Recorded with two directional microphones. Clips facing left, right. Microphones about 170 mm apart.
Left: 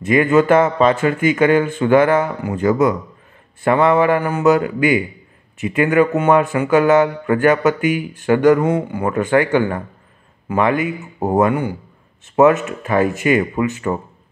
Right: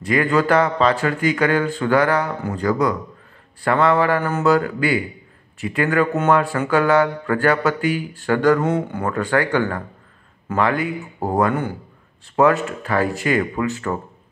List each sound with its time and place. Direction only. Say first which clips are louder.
0.0 s a man's voice: left 5 dB; 20° left (ahead or behind)